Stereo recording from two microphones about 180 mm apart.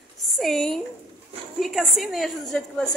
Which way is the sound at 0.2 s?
Centre (ahead or behind).